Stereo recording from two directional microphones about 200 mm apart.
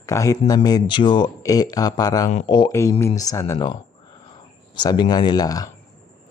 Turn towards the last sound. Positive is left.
turn(degrees=20)  # may be behind; listen again after turning